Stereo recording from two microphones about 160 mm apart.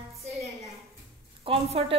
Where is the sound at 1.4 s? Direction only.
35° right (ahead or behind).